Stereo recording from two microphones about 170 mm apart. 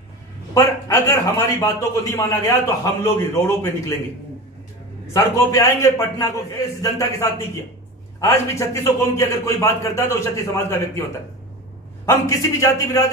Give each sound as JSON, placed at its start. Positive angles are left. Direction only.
{"t": 0.6, "sound": "a man's voice", "side_deg": 20}
{"t": 5.1, "sound": "a man's voice", "side_deg": 15}
{"t": 12.1, "sound": "a man's voice", "side_deg": 15}